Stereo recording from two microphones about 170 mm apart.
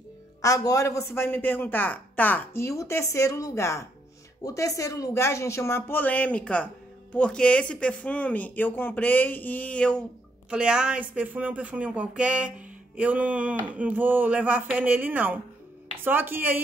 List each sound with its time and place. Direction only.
0.4 s speech: 20° left (ahead or behind)
10.5 s speech: 5° right (ahead or behind)